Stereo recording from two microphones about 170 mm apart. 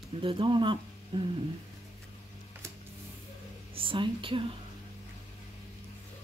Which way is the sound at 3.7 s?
30° right (ahead or behind).